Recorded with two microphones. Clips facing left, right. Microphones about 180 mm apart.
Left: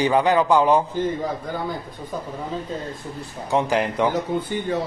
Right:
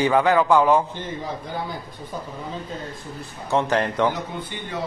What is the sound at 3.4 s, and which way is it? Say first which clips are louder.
Speech: even; 15° left (ahead or behind).